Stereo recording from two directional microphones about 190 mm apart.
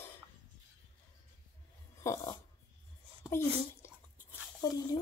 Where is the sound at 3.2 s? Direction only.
15° left (ahead or behind).